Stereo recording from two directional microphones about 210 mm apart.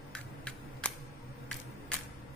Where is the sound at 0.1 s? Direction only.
5° left (ahead or behind).